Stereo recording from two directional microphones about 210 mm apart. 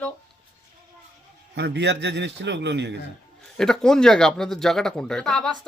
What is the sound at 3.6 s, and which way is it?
A man's voice, centre (ahead or behind).